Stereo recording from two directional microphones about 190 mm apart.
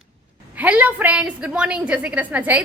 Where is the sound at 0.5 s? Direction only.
10° right (ahead or behind).